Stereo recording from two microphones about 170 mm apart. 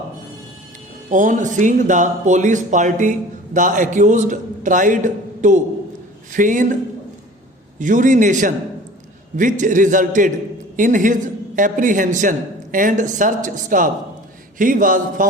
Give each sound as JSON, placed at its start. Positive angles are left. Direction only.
{"t": 1.1, "sound": "speech", "side_deg": -50}
{"t": 7.8, "sound": "speech", "side_deg": -50}